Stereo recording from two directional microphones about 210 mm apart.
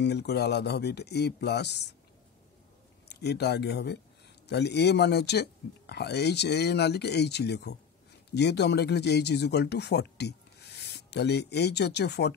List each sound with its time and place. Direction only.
0.0 s speech: 50° left (ahead or behind)
3.1 s speech: 50° left (ahead or behind)